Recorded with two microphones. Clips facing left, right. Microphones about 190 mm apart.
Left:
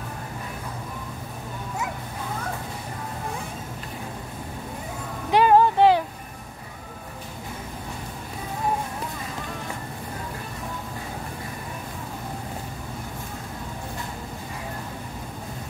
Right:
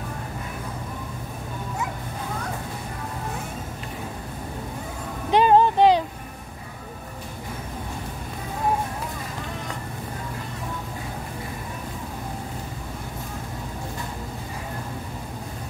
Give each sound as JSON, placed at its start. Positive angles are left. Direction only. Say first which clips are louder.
{"t": 5.3, "sound": "music", "louder": "even", "side_deg": -20}